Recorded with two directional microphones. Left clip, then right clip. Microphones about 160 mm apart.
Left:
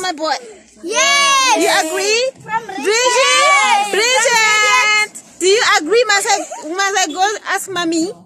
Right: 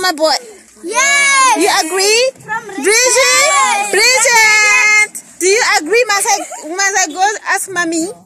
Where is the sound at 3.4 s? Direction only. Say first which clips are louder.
Even; 15° right (ahead or behind).